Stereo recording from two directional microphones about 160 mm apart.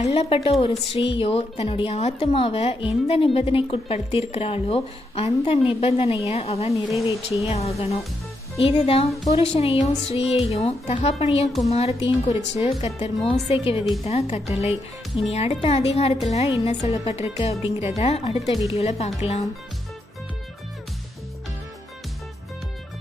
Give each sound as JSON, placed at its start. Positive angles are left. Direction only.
{"t": 0.0, "sound": "a woman's voice", "side_deg": 40}